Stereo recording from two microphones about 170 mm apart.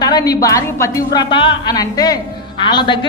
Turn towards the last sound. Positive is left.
turn(degrees=30)  # may be behind; listen again after turning